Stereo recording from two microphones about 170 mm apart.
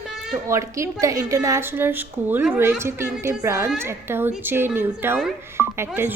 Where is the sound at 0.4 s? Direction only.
15° right (ahead or behind).